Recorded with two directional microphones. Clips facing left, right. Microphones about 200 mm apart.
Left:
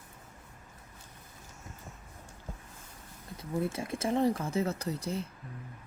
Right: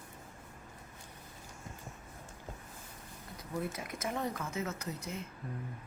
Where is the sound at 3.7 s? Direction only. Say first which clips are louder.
Left 7 dB; 30° left (ahead or behind).